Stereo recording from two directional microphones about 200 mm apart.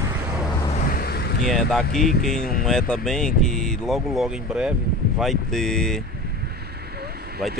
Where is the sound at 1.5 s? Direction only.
Centre (ahead or behind).